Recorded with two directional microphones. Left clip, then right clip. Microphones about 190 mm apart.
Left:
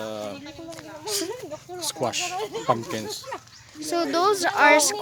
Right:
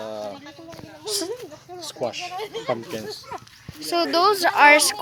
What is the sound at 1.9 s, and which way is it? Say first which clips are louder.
Speech: left 1 dB; 55° left (ahead or behind).